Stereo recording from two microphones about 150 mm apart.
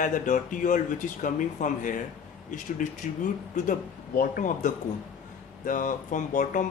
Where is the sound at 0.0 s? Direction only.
60° left (ahead or behind).